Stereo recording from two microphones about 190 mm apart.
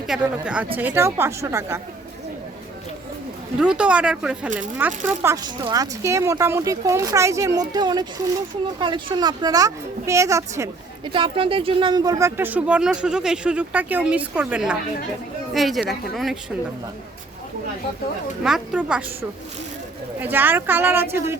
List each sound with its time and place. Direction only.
0.1 s a woman's voice: 5° right (ahead or behind)
3.6 s a woman's voice: 5° right (ahead or behind)
18.4 s speech: 5° right (ahead or behind)
20.1 s a woman's voice: 10° right (ahead or behind)